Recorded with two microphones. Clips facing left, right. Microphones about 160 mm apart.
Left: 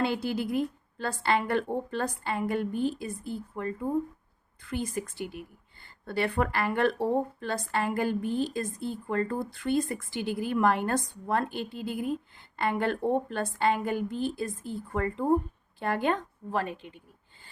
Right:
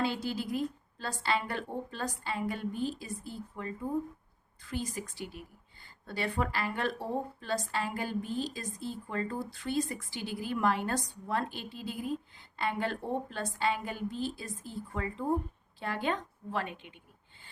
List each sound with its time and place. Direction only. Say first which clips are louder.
0.0 s a woman's voice: left 4 dB; 55° left (ahead or behind); by 17.0 s 40° left (ahead or behind)